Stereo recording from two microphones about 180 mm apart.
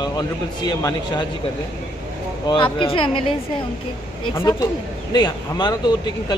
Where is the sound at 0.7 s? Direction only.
20° left (ahead or behind).